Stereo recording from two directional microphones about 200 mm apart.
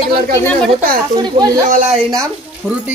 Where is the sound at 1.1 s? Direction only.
20° right (ahead or behind).